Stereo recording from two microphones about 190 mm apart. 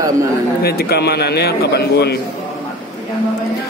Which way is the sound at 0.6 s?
55° left (ahead or behind).